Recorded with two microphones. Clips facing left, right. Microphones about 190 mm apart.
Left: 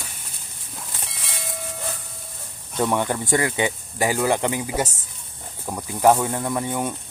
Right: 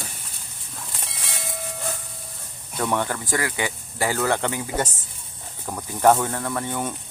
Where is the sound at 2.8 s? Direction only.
15° left (ahead or behind).